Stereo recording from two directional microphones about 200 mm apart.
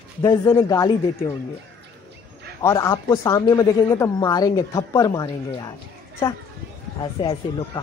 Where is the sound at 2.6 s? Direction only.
15° left (ahead or behind).